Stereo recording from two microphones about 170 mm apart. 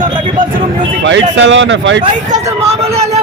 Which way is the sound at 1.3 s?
90° right.